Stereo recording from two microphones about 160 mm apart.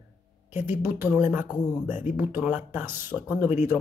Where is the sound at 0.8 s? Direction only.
10° right (ahead or behind).